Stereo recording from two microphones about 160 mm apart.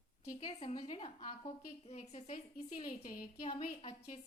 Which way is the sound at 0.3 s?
35° left (ahead or behind).